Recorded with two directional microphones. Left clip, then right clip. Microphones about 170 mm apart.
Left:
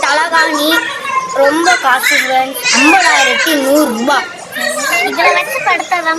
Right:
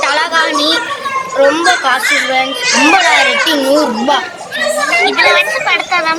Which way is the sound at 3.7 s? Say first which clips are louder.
Even; 15° left (ahead or behind).